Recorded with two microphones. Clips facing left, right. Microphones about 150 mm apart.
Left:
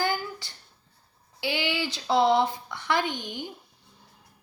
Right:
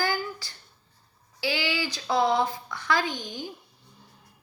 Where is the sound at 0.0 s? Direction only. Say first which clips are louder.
Even; 20° left (ahead or behind).